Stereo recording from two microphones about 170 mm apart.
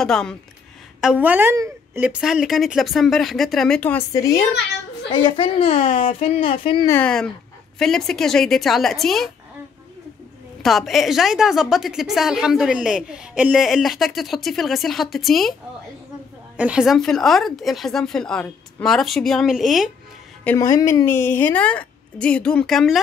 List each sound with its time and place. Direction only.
0.0 s a woman's voice: 5° left (ahead or behind)
1.0 s a woman's voice: 10° right (ahead or behind); by 4.0 s 5° left (ahead or behind)
4.1 s a child's voice: 20° left (ahead or behind)
6.9 s a woman's voice: 5° left (ahead or behind)
10.6 s a woman's voice: centre (ahead or behind)
16.5 s a woman's voice: 5° right (ahead or behind)
20.4 s a woman's voice: 20° left (ahead or behind); by 22.9 s centre (ahead or behind)